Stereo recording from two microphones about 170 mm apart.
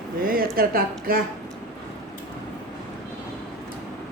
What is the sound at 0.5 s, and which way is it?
Speech, 60° right (ahead or behind).